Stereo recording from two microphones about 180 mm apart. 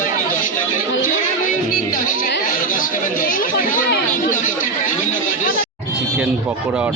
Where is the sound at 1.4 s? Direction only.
50° left (ahead or behind).